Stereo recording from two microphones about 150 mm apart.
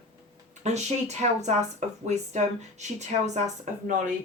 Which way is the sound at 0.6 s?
45° right (ahead or behind).